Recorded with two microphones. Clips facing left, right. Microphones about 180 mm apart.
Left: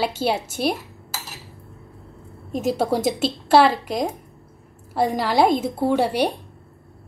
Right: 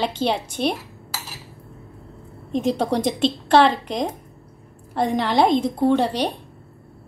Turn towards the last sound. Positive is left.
turn(degrees=10)  # may be behind; listen again after turning